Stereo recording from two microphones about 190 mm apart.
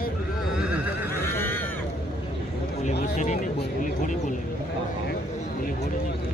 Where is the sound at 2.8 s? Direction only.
40° left (ahead or behind).